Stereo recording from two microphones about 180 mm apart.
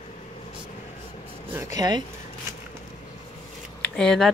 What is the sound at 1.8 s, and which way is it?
Speech, 25° right (ahead or behind).